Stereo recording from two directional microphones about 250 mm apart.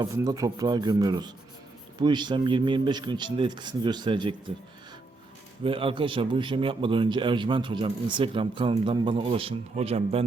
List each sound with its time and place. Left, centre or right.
0.0 s speech: centre
5.6 s a man's voice: right